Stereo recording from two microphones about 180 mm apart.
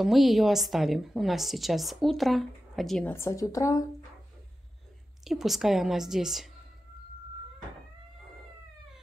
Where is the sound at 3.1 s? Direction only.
15° left (ahead or behind).